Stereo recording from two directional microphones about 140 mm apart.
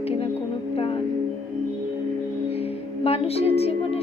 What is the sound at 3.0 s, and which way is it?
Speech, 45° left (ahead or behind).